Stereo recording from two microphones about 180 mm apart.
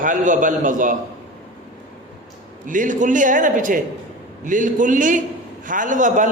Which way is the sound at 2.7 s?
45° right (ahead or behind).